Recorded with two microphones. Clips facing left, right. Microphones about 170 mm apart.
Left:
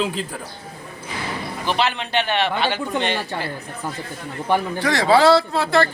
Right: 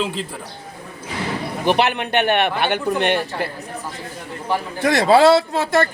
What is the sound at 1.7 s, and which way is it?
A man's voice, 60° right (ahead or behind).